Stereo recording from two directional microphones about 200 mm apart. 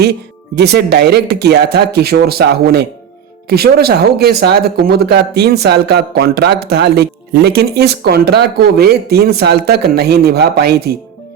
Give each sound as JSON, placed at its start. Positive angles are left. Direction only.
{"t": 0.5, "sound": "speech", "side_deg": -55}